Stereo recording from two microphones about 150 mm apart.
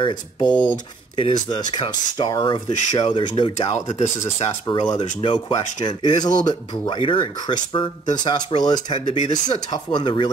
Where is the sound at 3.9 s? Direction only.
45° left (ahead or behind).